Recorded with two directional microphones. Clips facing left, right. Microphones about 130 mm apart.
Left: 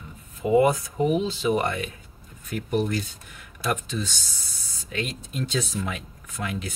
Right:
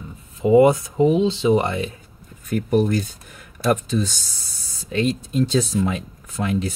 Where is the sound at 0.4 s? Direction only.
25° right (ahead or behind).